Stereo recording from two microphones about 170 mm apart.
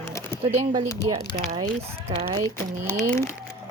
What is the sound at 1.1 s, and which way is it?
Speech, 30° right (ahead or behind).